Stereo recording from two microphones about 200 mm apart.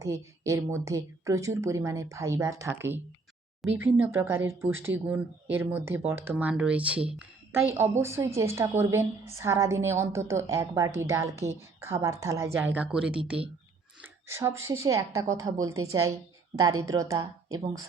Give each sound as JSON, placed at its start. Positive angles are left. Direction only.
{"t": 0.0, "sound": "a woman's voice", "side_deg": -15}
{"t": 4.0, "sound": "a woman's voice", "side_deg": -10}
{"t": 14.3, "sound": "a woman's voice", "side_deg": -15}